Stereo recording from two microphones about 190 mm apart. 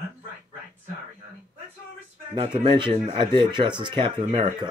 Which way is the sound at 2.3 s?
25° right (ahead or behind).